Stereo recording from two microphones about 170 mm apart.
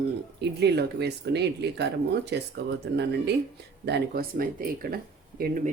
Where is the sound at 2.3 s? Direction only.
90° right.